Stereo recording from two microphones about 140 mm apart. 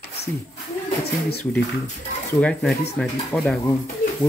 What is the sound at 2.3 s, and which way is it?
Speech, 5° left (ahead or behind).